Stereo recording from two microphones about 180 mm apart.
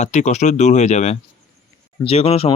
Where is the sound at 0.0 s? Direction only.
40° left (ahead or behind).